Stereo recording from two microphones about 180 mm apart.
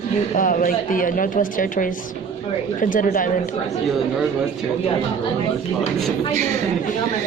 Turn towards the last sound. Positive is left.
turn(degrees=-40)  # may be behind; listen again after turning